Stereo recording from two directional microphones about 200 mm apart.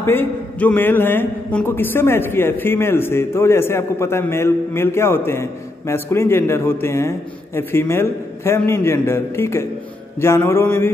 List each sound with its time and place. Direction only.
0.0 s a man's voice: 10° left (ahead or behind)